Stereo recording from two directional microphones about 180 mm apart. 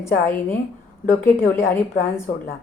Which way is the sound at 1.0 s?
50° left (ahead or behind).